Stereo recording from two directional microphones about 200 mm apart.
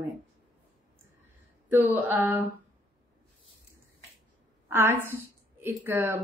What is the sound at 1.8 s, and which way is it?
Speech, 10° right (ahead or behind).